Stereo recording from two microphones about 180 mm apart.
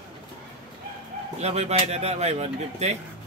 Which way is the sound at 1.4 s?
35° right (ahead or behind).